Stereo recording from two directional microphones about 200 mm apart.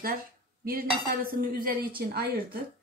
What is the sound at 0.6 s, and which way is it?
Cutlery, 45° right (ahead or behind).